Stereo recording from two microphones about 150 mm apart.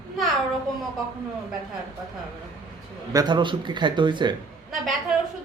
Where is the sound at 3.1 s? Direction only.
30° right (ahead or behind).